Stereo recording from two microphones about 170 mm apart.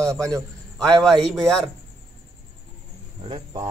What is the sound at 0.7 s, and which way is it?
Speech, centre (ahead or behind).